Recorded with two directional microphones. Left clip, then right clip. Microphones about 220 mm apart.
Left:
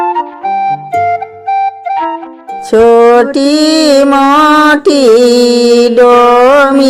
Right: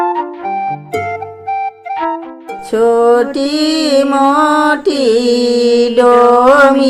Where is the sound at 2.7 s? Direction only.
35° left (ahead or behind).